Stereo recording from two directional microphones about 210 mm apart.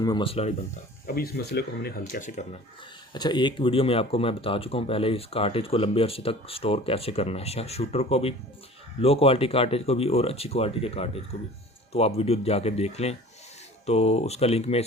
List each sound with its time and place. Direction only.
0.0 s speech: 20° left (ahead or behind)
1.0 s speech: 45° left (ahead or behind)
3.2 s speech: 20° left (ahead or behind)